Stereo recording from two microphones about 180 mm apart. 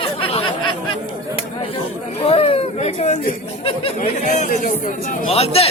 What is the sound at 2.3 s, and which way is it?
Speech, 35° left (ahead or behind).